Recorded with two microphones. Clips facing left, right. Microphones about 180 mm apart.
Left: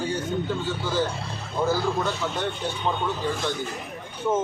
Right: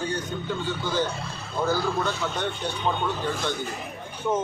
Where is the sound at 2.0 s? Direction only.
5° left (ahead or behind).